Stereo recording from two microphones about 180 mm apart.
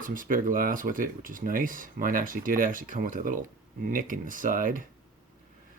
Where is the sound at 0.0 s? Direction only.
50° right (ahead or behind).